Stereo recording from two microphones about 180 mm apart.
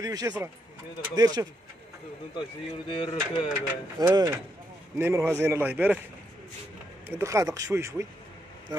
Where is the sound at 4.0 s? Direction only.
20° right (ahead or behind).